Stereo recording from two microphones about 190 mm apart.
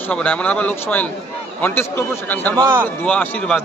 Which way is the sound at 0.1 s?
5° left (ahead or behind).